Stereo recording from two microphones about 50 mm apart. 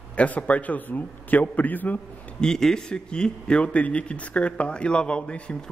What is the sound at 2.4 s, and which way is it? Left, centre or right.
A man's voice, centre.